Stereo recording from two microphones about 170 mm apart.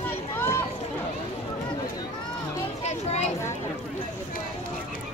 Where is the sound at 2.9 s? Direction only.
40° left (ahead or behind).